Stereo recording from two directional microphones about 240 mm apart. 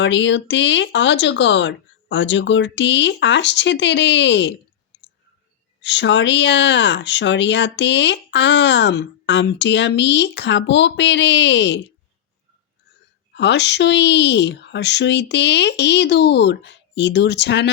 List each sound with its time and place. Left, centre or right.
0.0 s speech: left
13.3 s speech: left